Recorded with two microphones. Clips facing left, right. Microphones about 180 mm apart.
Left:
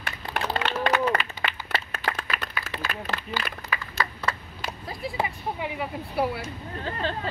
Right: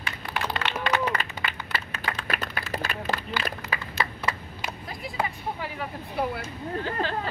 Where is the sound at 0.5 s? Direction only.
40° left (ahead or behind).